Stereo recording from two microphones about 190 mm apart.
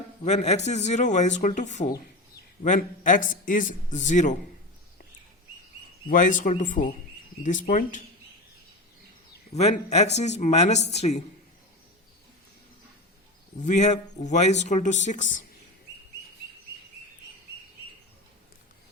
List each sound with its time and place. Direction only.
0.3 s speech: 35° left (ahead or behind)
6.1 s speech: 45° left (ahead or behind)
9.5 s speech: 35° left (ahead or behind)
13.6 s speech: 40° left (ahead or behind)